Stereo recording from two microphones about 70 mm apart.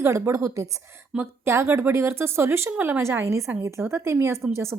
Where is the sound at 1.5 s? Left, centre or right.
Right.